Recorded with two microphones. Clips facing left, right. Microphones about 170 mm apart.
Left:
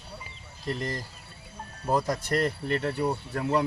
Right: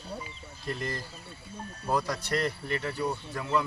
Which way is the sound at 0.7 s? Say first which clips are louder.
Left 2 dB; 35° left (ahead or behind).